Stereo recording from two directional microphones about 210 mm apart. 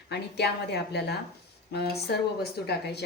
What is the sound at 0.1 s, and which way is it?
A woman's voice, 50° left (ahead or behind).